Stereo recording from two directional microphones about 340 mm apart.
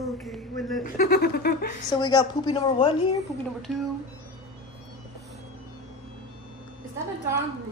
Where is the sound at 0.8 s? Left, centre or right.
Left.